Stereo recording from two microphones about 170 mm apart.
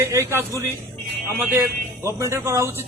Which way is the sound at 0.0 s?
15° right (ahead or behind).